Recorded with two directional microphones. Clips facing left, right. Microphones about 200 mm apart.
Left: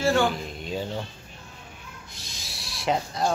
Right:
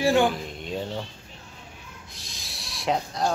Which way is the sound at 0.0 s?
15° right (ahead or behind).